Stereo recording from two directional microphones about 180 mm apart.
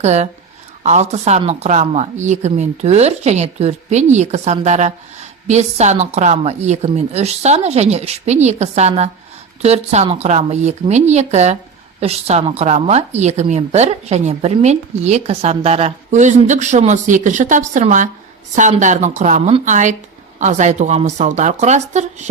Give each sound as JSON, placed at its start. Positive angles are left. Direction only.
{"t": 0.0, "sound": "a woman's voice", "side_deg": -40}